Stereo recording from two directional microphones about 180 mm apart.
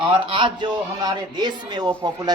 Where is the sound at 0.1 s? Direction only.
25° right (ahead or behind).